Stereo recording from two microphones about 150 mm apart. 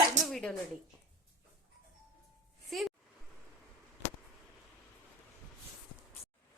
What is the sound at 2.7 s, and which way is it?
Speech, centre (ahead or behind).